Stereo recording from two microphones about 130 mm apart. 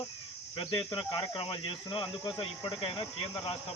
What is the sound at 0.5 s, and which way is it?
Speech, 40° left (ahead or behind).